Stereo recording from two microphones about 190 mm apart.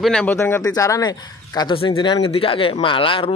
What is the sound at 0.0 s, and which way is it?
A man's voice, 5° left (ahead or behind).